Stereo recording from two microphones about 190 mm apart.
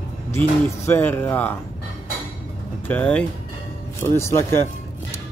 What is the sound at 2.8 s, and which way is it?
Speech, 10° left (ahead or behind).